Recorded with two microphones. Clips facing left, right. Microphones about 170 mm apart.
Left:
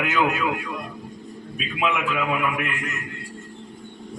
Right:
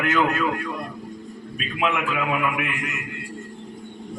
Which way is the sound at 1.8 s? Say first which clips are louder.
Even; 5° right (ahead or behind).